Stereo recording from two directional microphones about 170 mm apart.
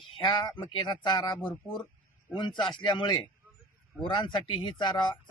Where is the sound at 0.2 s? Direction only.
25° left (ahead or behind).